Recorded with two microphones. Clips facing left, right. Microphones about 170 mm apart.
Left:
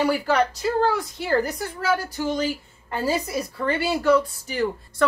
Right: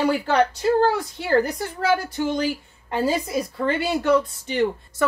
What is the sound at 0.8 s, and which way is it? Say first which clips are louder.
A woman's voice: right 1 dB; 25° right (ahead or behind).